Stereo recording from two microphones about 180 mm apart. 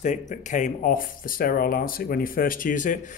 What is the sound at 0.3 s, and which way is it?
Speech, 45° left (ahead or behind).